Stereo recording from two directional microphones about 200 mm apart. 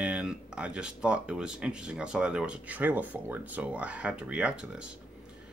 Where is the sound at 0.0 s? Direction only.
5° right (ahead or behind).